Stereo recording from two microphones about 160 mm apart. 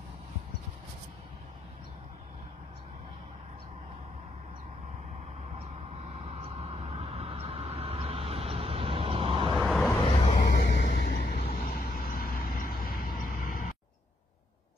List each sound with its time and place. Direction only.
6.1 s vehicle: 40° right (ahead or behind)
9.5 s vehicle: centre (ahead or behind)
10.0 s vehicle: 30° left (ahead or behind)
10.9 s vehicle: 55° left (ahead or behind)
13.2 s a sound: 60° left (ahead or behind)